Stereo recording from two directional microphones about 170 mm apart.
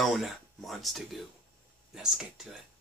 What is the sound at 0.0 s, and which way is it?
Speech, centre (ahead or behind).